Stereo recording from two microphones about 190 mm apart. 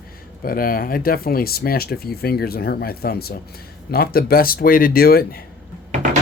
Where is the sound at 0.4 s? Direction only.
50° left (ahead or behind).